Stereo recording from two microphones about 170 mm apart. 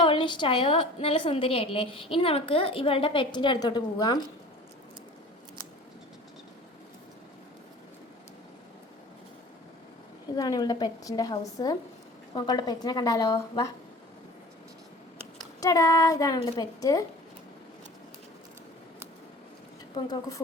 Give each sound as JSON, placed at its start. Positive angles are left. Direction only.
{"t": 0.0, "sound": "a woman's voice", "side_deg": 30}
{"t": 10.3, "sound": "a woman's voice", "side_deg": 20}
{"t": 15.6, "sound": "a woman's voice", "side_deg": 20}